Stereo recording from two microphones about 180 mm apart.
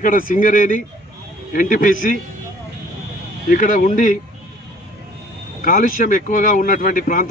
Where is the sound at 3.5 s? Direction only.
50° left (ahead or behind).